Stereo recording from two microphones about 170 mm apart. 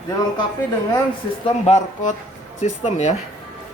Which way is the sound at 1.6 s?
40° left (ahead or behind).